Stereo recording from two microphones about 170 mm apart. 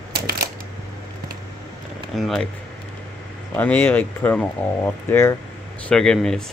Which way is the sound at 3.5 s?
10° left (ahead or behind).